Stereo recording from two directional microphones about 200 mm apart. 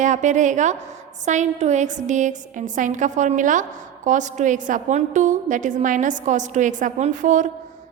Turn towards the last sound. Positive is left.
turn(degrees=-40)  # may be behind; listen again after turning